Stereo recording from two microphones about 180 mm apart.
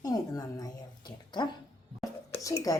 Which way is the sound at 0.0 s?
20° left (ahead or behind).